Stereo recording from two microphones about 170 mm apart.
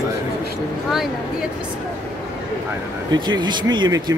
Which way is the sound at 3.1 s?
25° right (ahead or behind).